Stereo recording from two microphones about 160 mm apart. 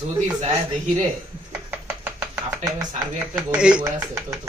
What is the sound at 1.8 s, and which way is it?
Chopping, 10° right (ahead or behind).